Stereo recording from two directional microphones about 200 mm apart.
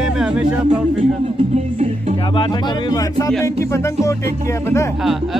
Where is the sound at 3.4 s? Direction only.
15° left (ahead or behind).